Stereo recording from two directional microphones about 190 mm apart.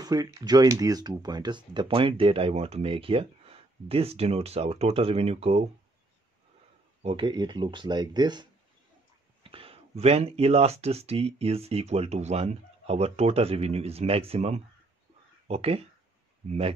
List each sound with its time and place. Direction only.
0.0 s speech: 20° right (ahead or behind)
7.0 s speech: 30° right (ahead or behind)